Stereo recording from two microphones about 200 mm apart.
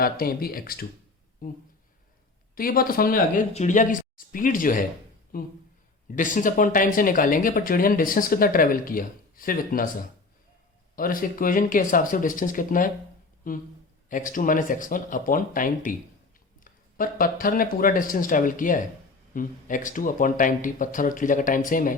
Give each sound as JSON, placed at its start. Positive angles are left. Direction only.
{"t": 0.0, "sound": "speech", "side_deg": 45}
{"t": 2.6, "sound": "speech", "side_deg": 45}
{"t": 10.9, "sound": "speech", "side_deg": 45}